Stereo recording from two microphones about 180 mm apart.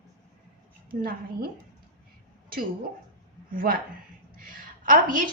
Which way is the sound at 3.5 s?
50° right (ahead or behind).